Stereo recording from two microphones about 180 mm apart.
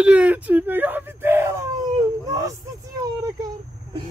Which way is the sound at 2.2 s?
20° right (ahead or behind).